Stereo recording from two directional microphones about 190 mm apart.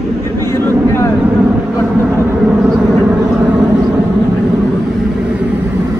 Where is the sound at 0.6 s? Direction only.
15° left (ahead or behind).